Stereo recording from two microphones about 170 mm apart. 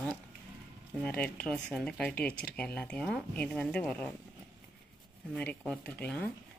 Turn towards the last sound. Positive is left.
turn(degrees=10)  # may be behind; listen again after turning